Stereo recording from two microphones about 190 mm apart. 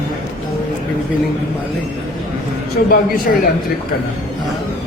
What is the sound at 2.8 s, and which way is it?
Speech, 50° left (ahead or behind).